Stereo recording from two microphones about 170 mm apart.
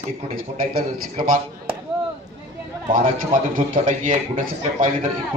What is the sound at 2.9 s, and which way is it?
A man's voice, 55° right (ahead or behind).